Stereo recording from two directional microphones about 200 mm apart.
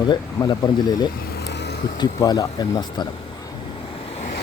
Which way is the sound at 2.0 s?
20° left (ahead or behind).